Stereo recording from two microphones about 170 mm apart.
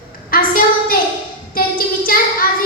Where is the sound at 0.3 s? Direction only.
55° left (ahead or behind).